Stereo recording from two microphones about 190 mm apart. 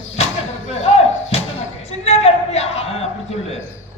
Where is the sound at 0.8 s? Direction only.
35° left (ahead or behind).